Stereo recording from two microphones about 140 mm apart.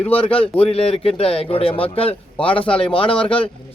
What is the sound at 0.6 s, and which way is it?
A man's voice, 45° left (ahead or behind).